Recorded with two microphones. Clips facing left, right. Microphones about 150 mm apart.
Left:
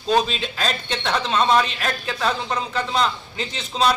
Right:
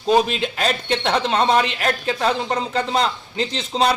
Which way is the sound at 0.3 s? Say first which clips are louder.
Right 4 dB; 20° right (ahead or behind).